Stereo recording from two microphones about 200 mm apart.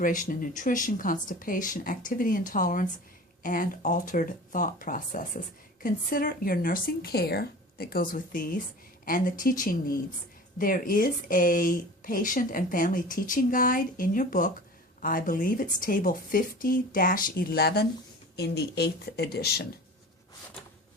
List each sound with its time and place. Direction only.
0.0 s speech: 40° left (ahead or behind)